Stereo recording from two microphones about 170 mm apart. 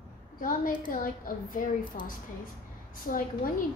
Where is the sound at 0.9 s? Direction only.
55° left (ahead or behind).